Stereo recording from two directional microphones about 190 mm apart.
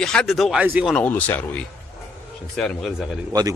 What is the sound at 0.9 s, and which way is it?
Speech, 10° left (ahead or behind).